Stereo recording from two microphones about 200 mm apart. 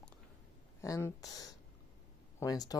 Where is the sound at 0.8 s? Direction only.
15° left (ahead or behind).